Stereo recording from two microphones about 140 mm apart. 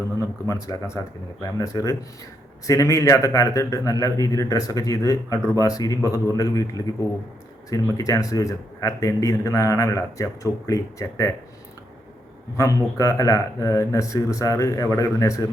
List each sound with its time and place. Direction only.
0.4 s a man's voice: 25° left (ahead or behind)
12.5 s a man's voice: 25° left (ahead or behind)